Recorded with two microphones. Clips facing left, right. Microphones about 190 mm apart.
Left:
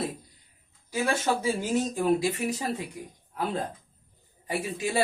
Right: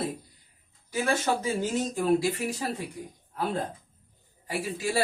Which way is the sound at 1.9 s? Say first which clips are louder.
Even; 20° left (ahead or behind).